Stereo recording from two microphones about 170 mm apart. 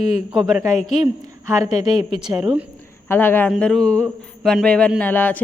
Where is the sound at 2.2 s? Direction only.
5° right (ahead or behind).